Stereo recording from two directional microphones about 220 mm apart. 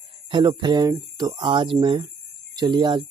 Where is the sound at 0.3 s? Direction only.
20° right (ahead or behind).